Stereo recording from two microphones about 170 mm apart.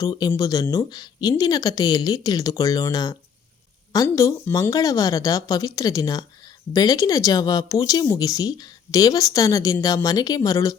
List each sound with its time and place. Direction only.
0.0 s a woman's voice: 20° left (ahead or behind)